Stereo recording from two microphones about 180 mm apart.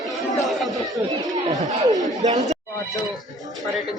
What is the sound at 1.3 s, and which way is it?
Speech, 20° right (ahead or behind).